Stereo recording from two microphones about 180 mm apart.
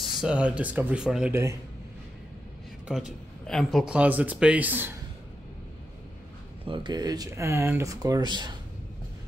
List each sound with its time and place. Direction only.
0.0 s speech: 5° right (ahead or behind)
1.3 s speech: 15° right (ahead or behind)
3.4 s speech: centre (ahead or behind)
6.6 s speech: 25° right (ahead or behind)